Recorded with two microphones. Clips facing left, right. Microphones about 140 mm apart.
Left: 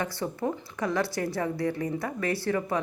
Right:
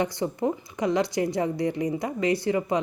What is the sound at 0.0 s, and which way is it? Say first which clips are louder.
Speech: right 4 dB; 20° right (ahead or behind).